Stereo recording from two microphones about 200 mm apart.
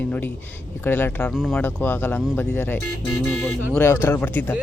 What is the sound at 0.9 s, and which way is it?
Speech, 10° left (ahead or behind).